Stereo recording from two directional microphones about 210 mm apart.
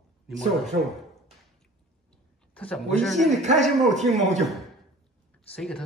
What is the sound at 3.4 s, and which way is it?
Speech, 35° right (ahead or behind).